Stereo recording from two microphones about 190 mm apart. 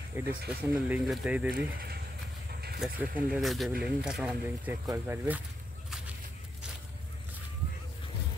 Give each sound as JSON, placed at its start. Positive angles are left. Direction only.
{"t": 0.2, "sound": "speech", "side_deg": -10}
{"t": 1.6, "sound": "speech", "side_deg": -55}
{"t": 2.8, "sound": "speech", "side_deg": -5}